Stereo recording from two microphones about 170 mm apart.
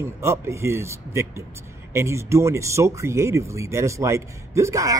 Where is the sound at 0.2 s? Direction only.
15° right (ahead or behind).